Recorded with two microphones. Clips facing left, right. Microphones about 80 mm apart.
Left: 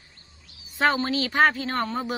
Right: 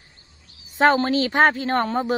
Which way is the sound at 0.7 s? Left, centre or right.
Right.